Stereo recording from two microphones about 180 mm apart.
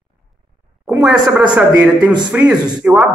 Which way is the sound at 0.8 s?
5° right (ahead or behind).